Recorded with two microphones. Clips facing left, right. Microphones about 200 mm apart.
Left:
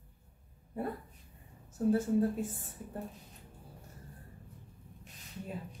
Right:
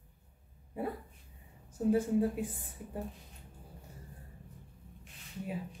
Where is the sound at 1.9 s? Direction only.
15° right (ahead or behind).